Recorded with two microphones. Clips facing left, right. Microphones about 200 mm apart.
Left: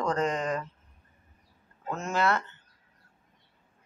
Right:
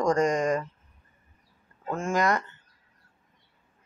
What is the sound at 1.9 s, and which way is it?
Speech, 10° right (ahead or behind).